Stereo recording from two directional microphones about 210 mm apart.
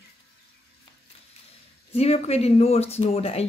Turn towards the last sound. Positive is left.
turn(degrees=30)  # may be behind; listen again after turning